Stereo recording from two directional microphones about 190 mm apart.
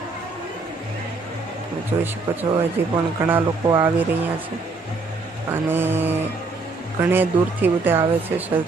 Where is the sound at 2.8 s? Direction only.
10° right (ahead or behind).